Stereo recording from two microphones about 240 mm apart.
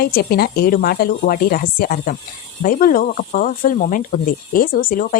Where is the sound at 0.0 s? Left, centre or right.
Left.